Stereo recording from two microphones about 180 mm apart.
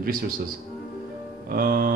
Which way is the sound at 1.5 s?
50° right (ahead or behind).